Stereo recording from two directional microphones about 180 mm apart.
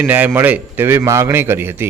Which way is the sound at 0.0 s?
10° right (ahead or behind).